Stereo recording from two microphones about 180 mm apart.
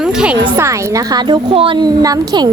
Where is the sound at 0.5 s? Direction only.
15° right (ahead or behind).